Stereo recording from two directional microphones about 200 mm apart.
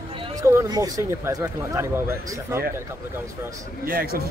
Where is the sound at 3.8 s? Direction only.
50° right (ahead or behind).